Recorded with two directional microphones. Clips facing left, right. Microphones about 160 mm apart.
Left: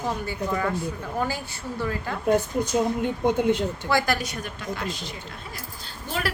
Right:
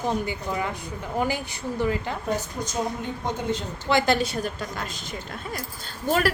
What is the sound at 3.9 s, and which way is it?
A woman's voice, 20° right (ahead or behind).